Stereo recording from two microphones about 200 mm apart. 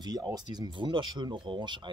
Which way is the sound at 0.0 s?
20° right (ahead or behind).